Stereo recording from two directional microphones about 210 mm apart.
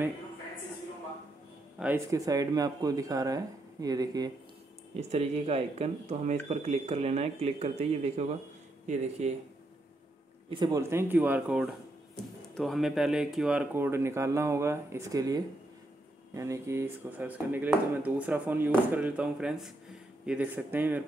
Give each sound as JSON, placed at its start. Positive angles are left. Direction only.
{"t": 1.8, "sound": "speech", "side_deg": -10}
{"t": 4.9, "sound": "speech", "side_deg": -30}
{"t": 10.5, "sound": "speech", "side_deg": -15}